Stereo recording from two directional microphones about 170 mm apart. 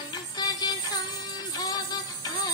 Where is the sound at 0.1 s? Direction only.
20° left (ahead or behind).